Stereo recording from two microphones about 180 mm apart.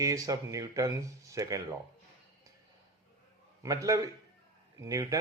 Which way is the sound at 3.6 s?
20° right (ahead or behind).